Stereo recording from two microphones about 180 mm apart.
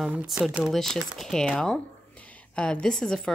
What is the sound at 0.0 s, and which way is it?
A woman's voice, 5° right (ahead or behind).